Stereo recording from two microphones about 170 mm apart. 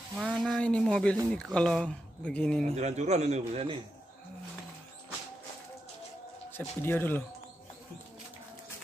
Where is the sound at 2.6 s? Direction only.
40° right (ahead or behind).